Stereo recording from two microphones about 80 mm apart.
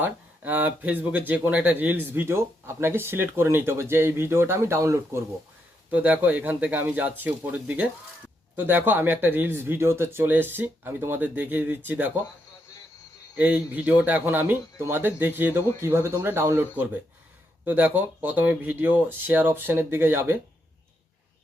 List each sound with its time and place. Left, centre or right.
0.0 s speech: right
5.9 s speech: centre
13.3 s speech: centre; by 16.6 s right
16.7 s speech: right